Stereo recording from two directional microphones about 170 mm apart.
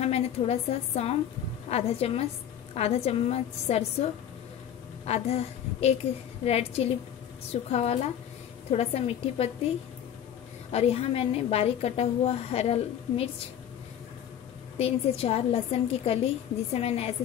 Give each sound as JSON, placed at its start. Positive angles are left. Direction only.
{"t": 0.0, "sound": "a woman's voice", "side_deg": 40}
{"t": 5.0, "sound": "a woman's voice", "side_deg": 40}
{"t": 10.7, "sound": "a woman's voice", "side_deg": 35}
{"t": 14.8, "sound": "a woman's voice", "side_deg": 35}